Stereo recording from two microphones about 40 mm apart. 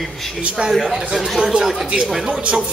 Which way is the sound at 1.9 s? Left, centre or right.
Right.